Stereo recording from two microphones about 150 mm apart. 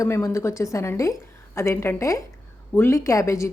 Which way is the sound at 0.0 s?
20° left (ahead or behind).